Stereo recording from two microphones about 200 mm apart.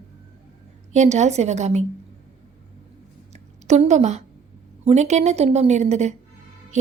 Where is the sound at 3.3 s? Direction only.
35° right (ahead or behind).